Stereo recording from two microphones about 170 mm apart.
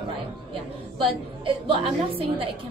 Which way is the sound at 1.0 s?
30° right (ahead or behind).